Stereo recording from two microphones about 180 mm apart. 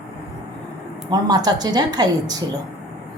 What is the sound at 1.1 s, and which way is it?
A woman's voice, 20° right (ahead or behind).